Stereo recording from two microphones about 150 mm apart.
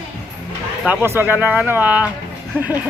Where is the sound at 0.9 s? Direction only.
15° right (ahead or behind).